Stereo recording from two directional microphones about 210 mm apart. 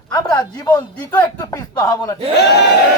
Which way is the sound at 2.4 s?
55° left (ahead or behind).